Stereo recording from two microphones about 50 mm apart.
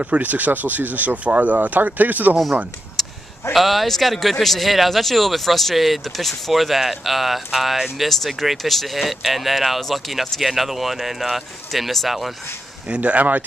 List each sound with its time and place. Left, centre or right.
0.0 s speech: right
3.0 s a sound: centre
3.5 s speech: centre
12.8 s speech: right